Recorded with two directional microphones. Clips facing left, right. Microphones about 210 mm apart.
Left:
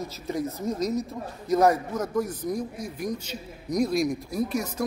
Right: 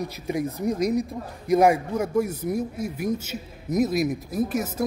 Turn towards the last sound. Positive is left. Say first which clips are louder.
# right 2 dB
turn(degrees=-5)  # may be behind; listen again after turning